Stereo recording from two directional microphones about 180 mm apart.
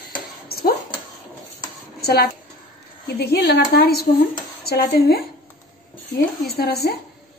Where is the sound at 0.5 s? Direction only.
60° left (ahead or behind).